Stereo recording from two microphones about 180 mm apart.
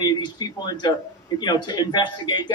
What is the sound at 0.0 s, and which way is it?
Speech, 20° left (ahead or behind).